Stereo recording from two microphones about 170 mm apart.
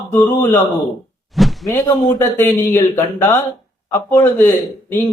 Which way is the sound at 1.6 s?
20° left (ahead or behind).